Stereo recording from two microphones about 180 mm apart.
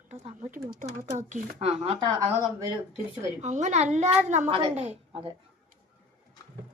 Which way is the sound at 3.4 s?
40° right (ahead or behind).